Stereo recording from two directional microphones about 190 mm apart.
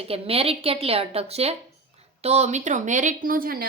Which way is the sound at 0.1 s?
30° right (ahead or behind).